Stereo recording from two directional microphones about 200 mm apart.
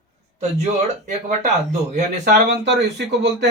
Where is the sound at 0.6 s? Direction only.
35° right (ahead or behind).